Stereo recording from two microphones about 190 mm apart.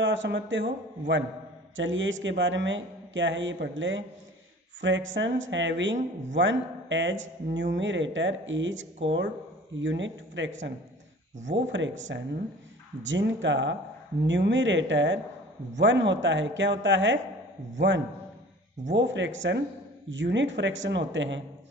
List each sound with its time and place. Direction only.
0.0 s speech: 75° right (ahead or behind)
1.8 s speech: 85° right